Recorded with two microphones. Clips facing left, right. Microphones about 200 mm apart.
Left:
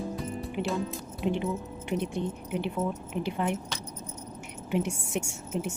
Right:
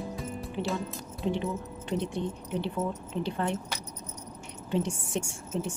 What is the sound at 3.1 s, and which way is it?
Speech, 15° left (ahead or behind).